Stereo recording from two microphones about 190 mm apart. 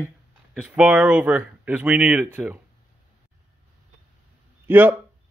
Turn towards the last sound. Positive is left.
turn(degrees=-10)  # may be behind; listen again after turning